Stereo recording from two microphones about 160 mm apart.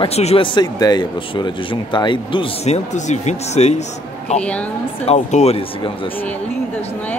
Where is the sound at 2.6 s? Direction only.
45° left (ahead or behind).